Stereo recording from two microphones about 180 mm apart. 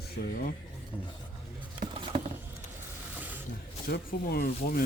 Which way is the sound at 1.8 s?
45° right (ahead or behind).